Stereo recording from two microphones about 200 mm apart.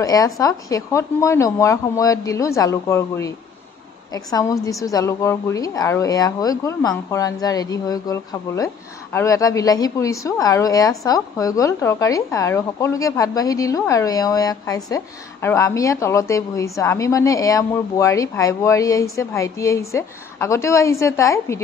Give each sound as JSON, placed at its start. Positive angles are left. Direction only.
{"t": 0.0, "sound": "a woman's voice", "side_deg": 15}